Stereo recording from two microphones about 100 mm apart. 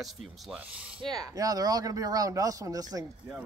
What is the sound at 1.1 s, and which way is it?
Speech, 40° right (ahead or behind).